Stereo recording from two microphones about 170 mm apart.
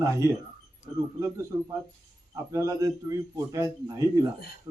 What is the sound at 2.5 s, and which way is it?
A man's voice, 15° right (ahead or behind).